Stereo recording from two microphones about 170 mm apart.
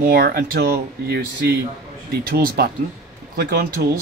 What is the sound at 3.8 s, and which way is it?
Speech, 70° right (ahead or behind).